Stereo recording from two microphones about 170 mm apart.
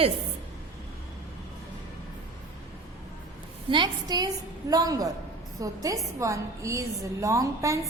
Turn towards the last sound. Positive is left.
turn(degrees=-20)  # may be behind; listen again after turning